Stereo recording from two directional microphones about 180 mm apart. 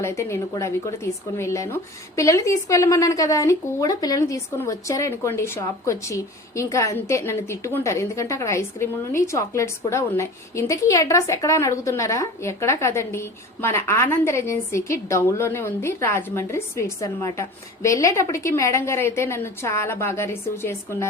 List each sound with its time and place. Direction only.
0.0 s a woman's voice: 15° left (ahead or behind)